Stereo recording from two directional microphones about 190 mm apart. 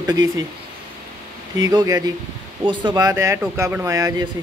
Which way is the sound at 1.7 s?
20° right (ahead or behind).